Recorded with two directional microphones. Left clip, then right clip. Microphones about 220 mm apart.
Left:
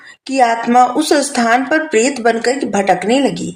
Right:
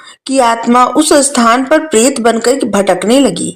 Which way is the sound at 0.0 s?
30° right (ahead or behind).